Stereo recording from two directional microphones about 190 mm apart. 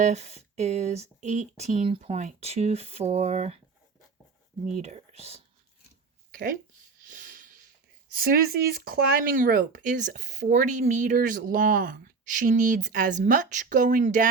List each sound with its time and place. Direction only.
0.0 s speech: 35° right (ahead or behind)
4.6 s speech: 35° right (ahead or behind)
6.3 s speech: 45° right (ahead or behind)
7.1 s a sound: 45° right (ahead or behind)
8.1 s speech: 50° right (ahead or behind)